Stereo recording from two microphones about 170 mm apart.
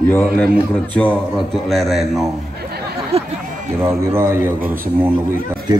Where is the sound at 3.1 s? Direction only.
35° right (ahead or behind).